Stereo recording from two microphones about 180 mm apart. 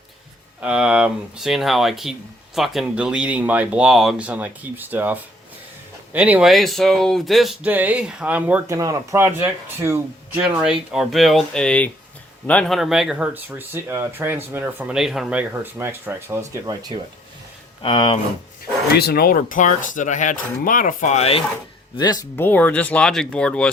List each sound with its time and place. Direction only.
0.6 s speech: 5° right (ahead or behind)
17.8 s speech: 30° left (ahead or behind)
18.9 s speech: 60° left (ahead or behind); by 21.4 s 35° left (ahead or behind)
21.9 s speech: 25° left (ahead or behind); by 23.7 s 5° left (ahead or behind)